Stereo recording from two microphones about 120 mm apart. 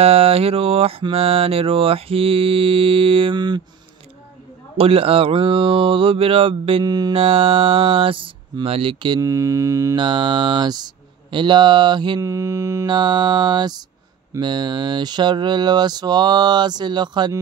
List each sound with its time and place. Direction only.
0.0 s mantra: 55° right (ahead or behind); by 3.6 s 35° right (ahead or behind)
4.7 s mantra: 50° right (ahead or behind)
6.8 s speech: 35° right (ahead or behind)
7.2 s mantra: 50° right (ahead or behind)
9.2 s mantra: 25° right (ahead or behind)
9.9 s speech: 40° right (ahead or behind)
12.2 s mantra: 25° right (ahead or behind)
12.8 s speech: 40° right (ahead or behind)